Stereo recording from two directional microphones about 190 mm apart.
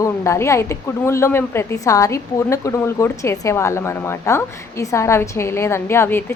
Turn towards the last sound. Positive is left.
turn(degrees=10)  # may be behind; listen again after turning